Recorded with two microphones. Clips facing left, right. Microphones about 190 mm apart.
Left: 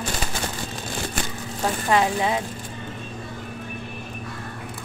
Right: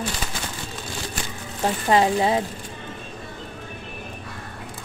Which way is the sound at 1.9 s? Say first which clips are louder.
Right 3 dB; 30° right (ahead or behind).